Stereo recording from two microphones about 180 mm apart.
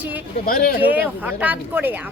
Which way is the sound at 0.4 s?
50° left (ahead or behind).